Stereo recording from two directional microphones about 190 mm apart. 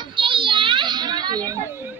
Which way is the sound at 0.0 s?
25° right (ahead or behind).